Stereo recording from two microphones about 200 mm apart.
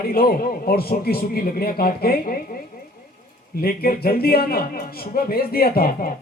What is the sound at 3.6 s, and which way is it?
A man's voice, 50° left (ahead or behind).